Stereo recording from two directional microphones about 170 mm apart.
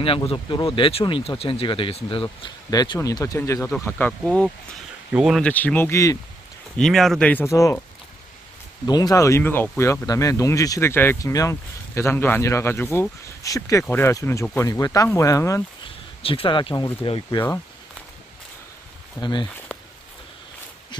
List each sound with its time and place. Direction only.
0.0 s speech: 30° left (ahead or behind)
2.2 s speech: 20° left (ahead or behind); by 5.4 s 5° right (ahead or behind)
5.4 s speech: 10° left (ahead or behind)
6.8 s speech: centre (ahead or behind); by 7.8 s 20° left (ahead or behind)
8.8 s speech: 25° left (ahead or behind)
14.7 s speech: 20° left (ahead or behind)
16.2 s speech: 35° left (ahead or behind)
19.2 s speech: 25° left (ahead or behind)